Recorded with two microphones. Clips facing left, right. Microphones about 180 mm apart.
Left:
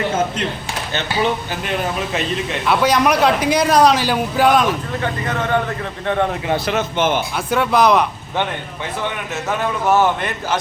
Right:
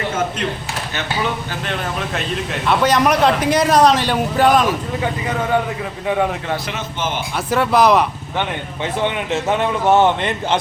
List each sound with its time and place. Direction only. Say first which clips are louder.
1.6 s a man's voice: left 3 dB; 5° left (ahead or behind)
4.9 s speech: right 1 dB; 10° right (ahead or behind)
6.7 s speech: left 6 dB; 55° left (ahead or behind)
7.3 s a man's voice: right 4 dB; centre (ahead or behind)
8.8 s a man's voice: right 5 dB; 20° right (ahead or behind)